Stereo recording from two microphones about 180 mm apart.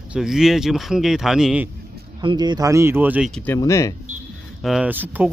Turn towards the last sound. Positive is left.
turn(degrees=-10)  # may be behind; listen again after turning